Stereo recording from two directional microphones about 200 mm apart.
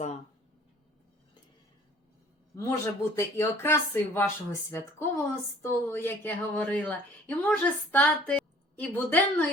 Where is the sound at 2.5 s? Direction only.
15° left (ahead or behind).